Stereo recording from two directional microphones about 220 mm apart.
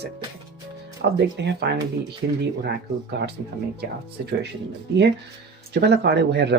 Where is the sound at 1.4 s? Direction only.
50° right (ahead or behind).